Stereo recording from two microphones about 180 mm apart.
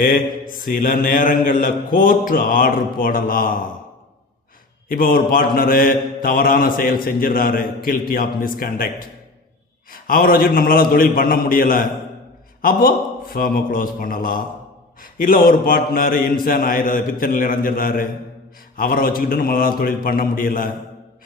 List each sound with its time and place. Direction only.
0.0 s mantra: 50° left (ahead or behind)
4.9 s mantra: 50° left (ahead or behind)